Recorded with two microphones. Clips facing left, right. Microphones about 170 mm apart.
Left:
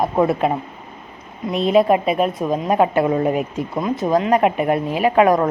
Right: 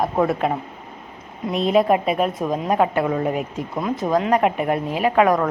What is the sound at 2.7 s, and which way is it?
Speech, 20° left (ahead or behind).